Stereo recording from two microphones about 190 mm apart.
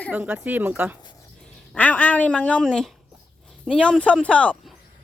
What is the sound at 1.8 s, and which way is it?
A woman's voice, 10° left (ahead or behind).